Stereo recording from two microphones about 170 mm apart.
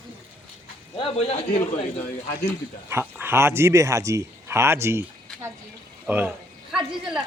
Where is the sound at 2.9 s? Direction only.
15° right (ahead or behind).